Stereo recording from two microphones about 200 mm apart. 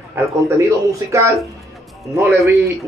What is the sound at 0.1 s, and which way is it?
A man's voice, 15° right (ahead or behind).